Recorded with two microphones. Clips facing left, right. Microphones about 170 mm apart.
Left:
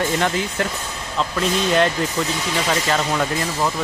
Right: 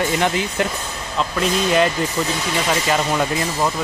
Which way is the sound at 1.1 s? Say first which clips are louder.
Right 1 dB; centre (ahead or behind).